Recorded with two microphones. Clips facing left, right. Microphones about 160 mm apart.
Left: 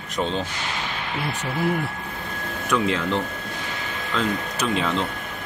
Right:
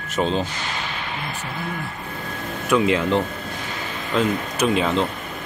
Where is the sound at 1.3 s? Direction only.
90° left.